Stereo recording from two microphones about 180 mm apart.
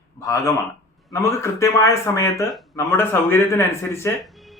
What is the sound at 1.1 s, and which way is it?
Speech, 15° left (ahead or behind).